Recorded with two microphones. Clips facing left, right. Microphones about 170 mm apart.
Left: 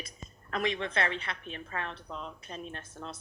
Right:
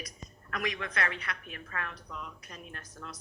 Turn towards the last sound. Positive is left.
turn(degrees=25)  # may be behind; listen again after turning